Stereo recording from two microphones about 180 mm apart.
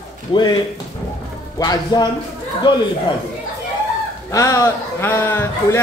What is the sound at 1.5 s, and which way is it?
Speech, 20° left (ahead or behind).